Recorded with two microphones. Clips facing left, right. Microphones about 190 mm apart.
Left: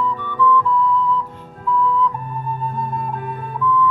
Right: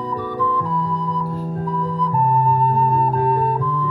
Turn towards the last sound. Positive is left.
turn(degrees=-40)  # may be behind; listen again after turning